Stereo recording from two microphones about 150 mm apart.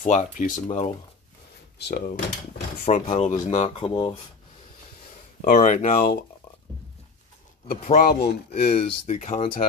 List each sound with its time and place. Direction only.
0.0 s speech: 55° left (ahead or behind)
0.7 s speech: 45° left (ahead or behind)
1.8 s speech: 90° left
2.8 s speech: 50° left (ahead or behind)
5.4 s speech: 60° left (ahead or behind)
7.6 s speech: 75° left (ahead or behind); by 8.4 s 90° left
8.6 s speech: 45° left (ahead or behind)